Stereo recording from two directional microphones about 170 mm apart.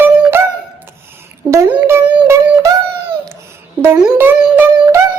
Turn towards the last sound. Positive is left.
turn(degrees=-15)  # may be behind; listen again after turning